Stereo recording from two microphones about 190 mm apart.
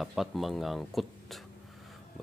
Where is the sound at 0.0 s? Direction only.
Centre (ahead or behind).